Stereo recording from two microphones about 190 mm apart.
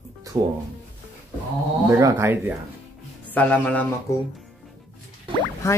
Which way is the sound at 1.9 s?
15° right (ahead or behind).